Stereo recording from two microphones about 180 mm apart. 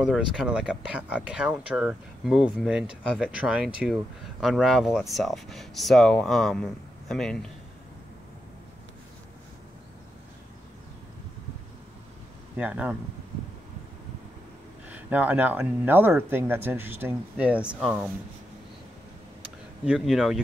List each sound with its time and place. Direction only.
0.1 s speech: 5° right (ahead or behind)
12.5 s speech: 5° right (ahead or behind)
14.9 s speech: 10° right (ahead or behind)
19.8 s speech: 5° right (ahead or behind)